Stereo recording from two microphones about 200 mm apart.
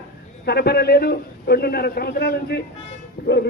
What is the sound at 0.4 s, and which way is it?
A man's voice, 55° left (ahead or behind).